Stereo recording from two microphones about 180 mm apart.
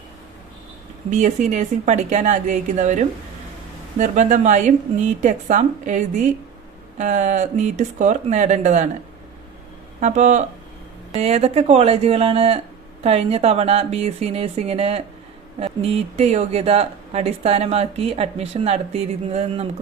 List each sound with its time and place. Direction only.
1.1 s a woman's voice: 40° right (ahead or behind)
10.0 s speech: 40° right (ahead or behind)